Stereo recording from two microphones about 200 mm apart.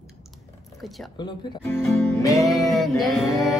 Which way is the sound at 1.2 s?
20° left (ahead or behind).